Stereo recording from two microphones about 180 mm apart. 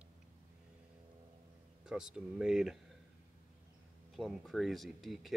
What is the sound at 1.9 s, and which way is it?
Speech, 5° right (ahead or behind).